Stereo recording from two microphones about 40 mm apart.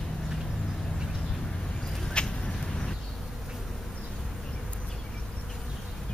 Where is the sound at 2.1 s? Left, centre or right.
Centre.